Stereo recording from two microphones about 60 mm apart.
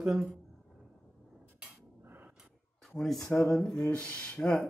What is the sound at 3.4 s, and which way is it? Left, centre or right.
Speech, centre.